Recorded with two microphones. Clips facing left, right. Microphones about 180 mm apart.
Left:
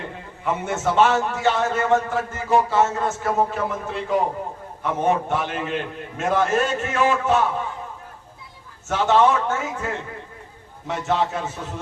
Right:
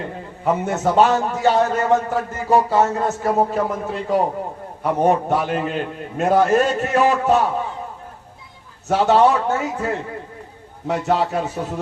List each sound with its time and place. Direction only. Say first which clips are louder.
0.4 s a man's voice: right 4 dB; 40° right (ahead or behind)
8.9 s a man's voice: right 3 dB; 35° right (ahead or behind)